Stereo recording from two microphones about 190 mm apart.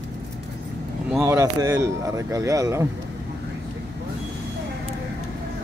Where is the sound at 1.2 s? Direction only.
15° right (ahead or behind).